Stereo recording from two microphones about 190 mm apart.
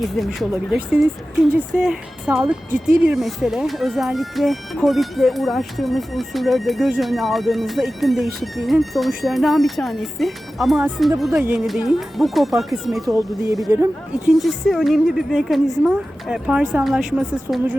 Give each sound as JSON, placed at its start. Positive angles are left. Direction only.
{"t": 0.2, "sound": "speech", "side_deg": 0}
{"t": 1.5, "sound": "speech", "side_deg": -5}
{"t": 13.1, "sound": "speech", "side_deg": -15}